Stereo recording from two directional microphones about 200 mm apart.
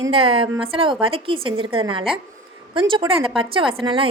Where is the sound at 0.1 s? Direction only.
25° right (ahead or behind).